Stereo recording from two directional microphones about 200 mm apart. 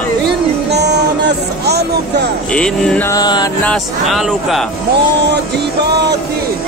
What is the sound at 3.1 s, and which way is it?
Music, 20° left (ahead or behind).